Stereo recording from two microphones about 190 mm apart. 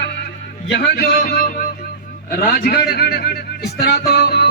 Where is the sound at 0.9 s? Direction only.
50° left (ahead or behind).